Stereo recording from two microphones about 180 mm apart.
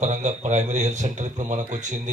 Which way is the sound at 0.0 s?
40° right (ahead or behind).